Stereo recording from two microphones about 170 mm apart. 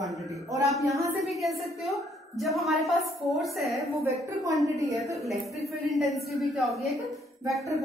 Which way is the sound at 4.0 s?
15° right (ahead or behind).